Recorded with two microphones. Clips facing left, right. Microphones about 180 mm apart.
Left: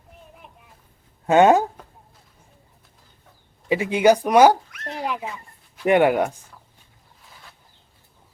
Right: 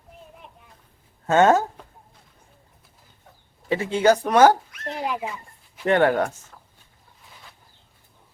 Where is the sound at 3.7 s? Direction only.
15° left (ahead or behind).